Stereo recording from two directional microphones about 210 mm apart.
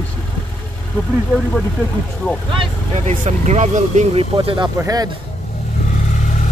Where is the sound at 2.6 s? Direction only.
30° right (ahead or behind).